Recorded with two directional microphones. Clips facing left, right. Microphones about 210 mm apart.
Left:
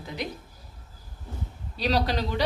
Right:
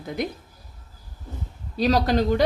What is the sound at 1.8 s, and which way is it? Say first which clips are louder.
Speech: right 6 dB; 45° right (ahead or behind).